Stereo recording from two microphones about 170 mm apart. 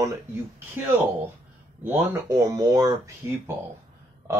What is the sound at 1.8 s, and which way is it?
Speech, 15° right (ahead or behind).